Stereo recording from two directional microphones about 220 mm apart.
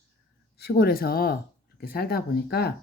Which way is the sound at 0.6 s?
45° left (ahead or behind).